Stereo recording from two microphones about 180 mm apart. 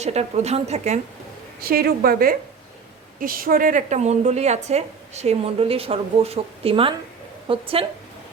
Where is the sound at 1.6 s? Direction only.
55° right (ahead or behind).